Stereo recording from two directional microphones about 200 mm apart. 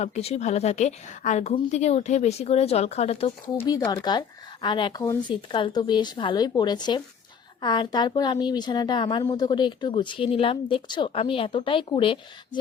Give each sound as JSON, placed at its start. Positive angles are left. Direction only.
{"t": 0.0, "sound": "speech", "side_deg": 30}
{"t": 3.6, "sound": "a woman's voice", "side_deg": 15}